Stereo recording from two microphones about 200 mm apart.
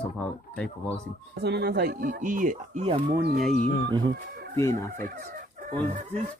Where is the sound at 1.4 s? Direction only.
55° right (ahead or behind); by 3.0 s 35° right (ahead or behind).